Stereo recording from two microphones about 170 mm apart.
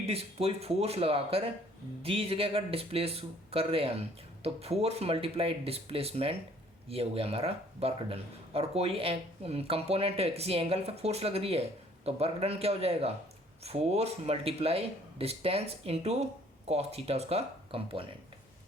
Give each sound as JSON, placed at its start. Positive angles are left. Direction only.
{"t": 0.0, "sound": "speech", "side_deg": -35}